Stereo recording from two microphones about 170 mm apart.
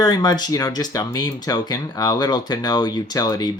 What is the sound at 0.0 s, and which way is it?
Speech, 25° left (ahead or behind).